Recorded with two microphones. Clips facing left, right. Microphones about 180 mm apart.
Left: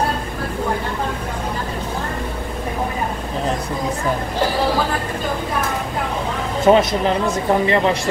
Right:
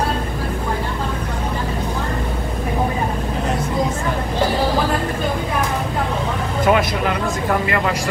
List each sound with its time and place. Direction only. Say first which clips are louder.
6.6 s speech: left 4 dB; 25° left (ahead or behind)